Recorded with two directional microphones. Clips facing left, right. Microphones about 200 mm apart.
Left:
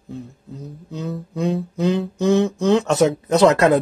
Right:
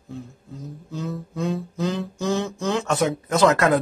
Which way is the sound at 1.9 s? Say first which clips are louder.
Left 8 dB; 60° left (ahead or behind).